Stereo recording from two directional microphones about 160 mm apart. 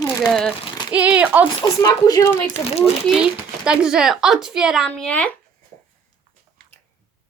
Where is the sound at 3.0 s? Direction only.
5° right (ahead or behind).